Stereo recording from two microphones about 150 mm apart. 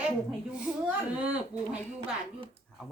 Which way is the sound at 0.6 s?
10° right (ahead or behind).